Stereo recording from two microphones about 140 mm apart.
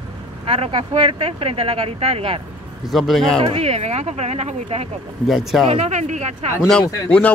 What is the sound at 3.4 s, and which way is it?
Speech, 45° right (ahead or behind).